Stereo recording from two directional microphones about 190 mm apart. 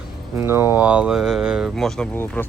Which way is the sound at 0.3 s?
15° right (ahead or behind).